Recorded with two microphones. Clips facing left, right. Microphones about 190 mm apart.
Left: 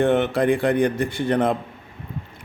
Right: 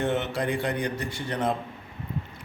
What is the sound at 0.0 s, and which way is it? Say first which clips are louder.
A man's voice: left 8 dB; 60° left (ahead or behind).